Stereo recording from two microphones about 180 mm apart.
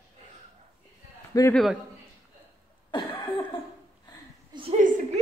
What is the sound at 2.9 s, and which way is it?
Cough, 25° left (ahead or behind).